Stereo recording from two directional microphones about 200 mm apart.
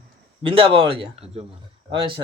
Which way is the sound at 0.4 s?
25° right (ahead or behind).